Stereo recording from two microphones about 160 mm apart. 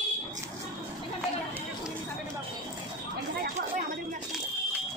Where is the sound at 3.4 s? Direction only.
65° right (ahead or behind).